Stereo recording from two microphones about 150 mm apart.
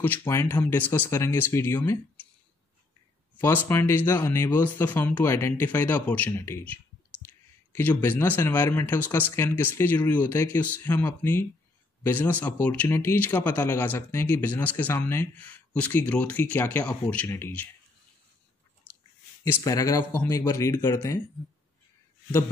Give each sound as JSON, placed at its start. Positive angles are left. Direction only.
{"t": 0.0, "sound": "speech", "side_deg": 15}
{"t": 3.3, "sound": "speech", "side_deg": 15}
{"t": 19.5, "sound": "speech", "side_deg": 20}